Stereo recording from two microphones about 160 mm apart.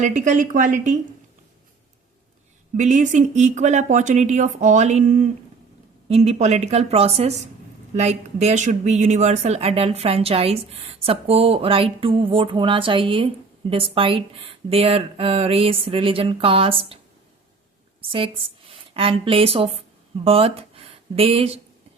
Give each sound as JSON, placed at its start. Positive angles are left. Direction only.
{"t": 0.0, "sound": "speech", "side_deg": -50}
{"t": 2.7, "sound": "speech", "side_deg": -50}
{"t": 18.1, "sound": "speech", "side_deg": -35}